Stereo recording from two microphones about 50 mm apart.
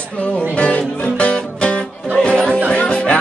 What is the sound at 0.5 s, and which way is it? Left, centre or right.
Music, left.